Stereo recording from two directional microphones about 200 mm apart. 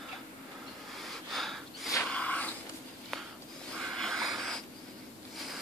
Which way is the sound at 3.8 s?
Centre (ahead or behind).